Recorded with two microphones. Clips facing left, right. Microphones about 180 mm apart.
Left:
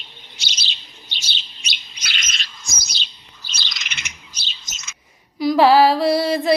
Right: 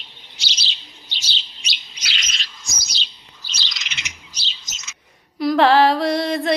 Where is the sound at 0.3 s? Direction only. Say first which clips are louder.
Even; 50° left (ahead or behind).